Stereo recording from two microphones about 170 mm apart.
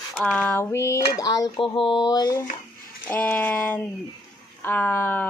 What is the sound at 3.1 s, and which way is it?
A woman's voice, 10° left (ahead or behind).